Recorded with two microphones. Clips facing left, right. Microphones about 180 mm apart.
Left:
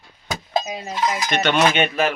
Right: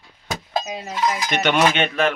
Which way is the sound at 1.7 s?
5° left (ahead or behind).